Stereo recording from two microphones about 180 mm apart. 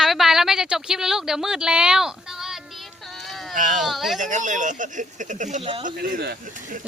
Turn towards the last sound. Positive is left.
turn(degrees=-60)  # may be behind; listen again after turning